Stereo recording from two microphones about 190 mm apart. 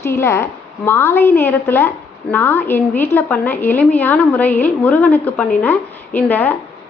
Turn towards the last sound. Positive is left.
turn(degrees=10)  # may be behind; listen again after turning